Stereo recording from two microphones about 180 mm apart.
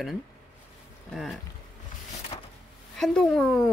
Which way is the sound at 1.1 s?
Centre (ahead or behind).